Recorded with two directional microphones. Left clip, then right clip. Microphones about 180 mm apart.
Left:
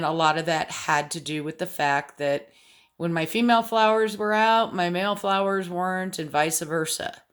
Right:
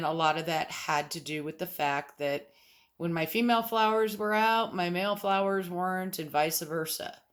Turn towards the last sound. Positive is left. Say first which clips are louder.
# left 7 dB
turn(degrees=35)  # may be behind; listen again after turning